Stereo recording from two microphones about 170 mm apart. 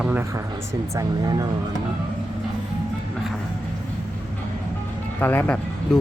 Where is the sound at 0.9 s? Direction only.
20° right (ahead or behind).